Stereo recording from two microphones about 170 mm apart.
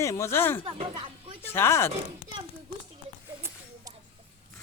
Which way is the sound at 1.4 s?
15° left (ahead or behind).